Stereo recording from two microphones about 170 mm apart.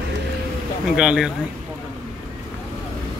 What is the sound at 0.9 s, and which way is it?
Speech, 5° right (ahead or behind).